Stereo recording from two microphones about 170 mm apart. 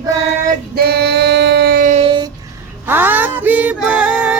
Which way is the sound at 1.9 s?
30° right (ahead or behind).